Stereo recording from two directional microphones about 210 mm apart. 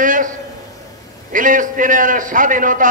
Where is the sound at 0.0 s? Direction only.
40° right (ahead or behind).